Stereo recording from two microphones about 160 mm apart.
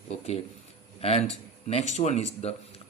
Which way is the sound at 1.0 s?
40° left (ahead or behind).